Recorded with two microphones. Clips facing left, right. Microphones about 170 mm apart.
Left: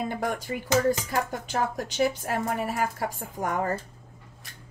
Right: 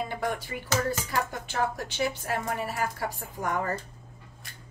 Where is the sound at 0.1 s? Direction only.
50° left (ahead or behind).